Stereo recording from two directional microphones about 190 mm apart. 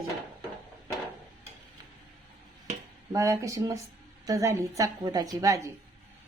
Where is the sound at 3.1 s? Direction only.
15° right (ahead or behind).